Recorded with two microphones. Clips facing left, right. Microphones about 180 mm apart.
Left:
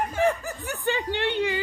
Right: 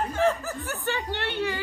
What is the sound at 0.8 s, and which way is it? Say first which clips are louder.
Speech: left 5 dB; 15° left (ahead or behind).